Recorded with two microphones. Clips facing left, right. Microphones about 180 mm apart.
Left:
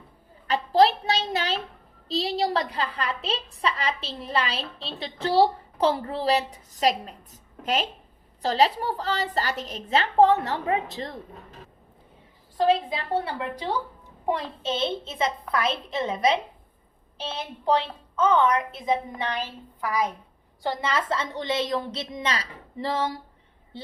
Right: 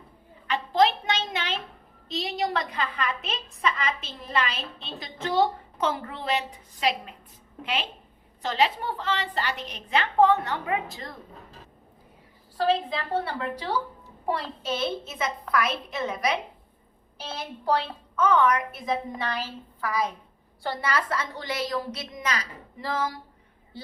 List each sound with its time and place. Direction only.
0.4 s a sound: 35° left (ahead or behind)
2.0 s a woman's voice: 30° left (ahead or behind)
13.2 s a woman's voice: 15° left (ahead or behind)
18.2 s a woman's voice: 25° left (ahead or behind)